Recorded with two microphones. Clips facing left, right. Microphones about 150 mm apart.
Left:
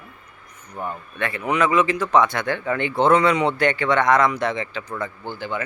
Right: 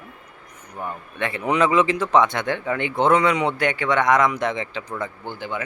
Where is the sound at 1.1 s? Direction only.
20° right (ahead or behind).